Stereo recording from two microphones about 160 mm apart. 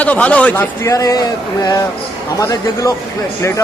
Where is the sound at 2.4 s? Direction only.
20° left (ahead or behind).